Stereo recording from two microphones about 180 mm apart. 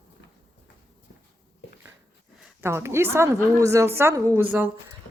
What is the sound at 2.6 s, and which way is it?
A woman's voice, 15° right (ahead or behind).